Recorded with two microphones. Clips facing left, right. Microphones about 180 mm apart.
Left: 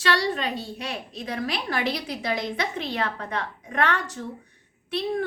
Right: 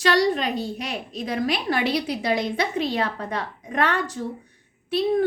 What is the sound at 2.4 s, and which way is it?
A woman's voice, 35° right (ahead or behind).